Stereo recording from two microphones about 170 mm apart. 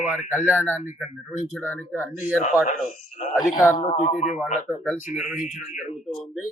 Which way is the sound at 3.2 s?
40° left (ahead or behind).